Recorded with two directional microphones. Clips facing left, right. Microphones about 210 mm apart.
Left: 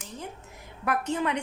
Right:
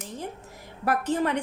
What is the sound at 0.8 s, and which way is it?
Speech, 40° right (ahead or behind).